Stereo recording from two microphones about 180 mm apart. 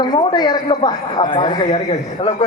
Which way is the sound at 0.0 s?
25° left (ahead or behind).